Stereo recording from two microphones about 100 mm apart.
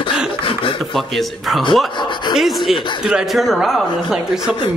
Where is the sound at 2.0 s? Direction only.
50° left (ahead or behind).